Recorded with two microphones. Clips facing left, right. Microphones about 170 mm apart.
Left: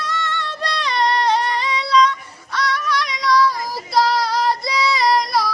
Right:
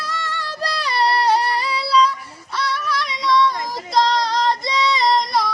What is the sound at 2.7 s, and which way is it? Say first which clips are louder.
Female singing: left 2 dB; centre (ahead or behind).